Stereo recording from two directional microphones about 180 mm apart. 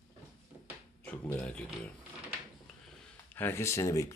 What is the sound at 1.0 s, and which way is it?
Speech, 10° left (ahead or behind).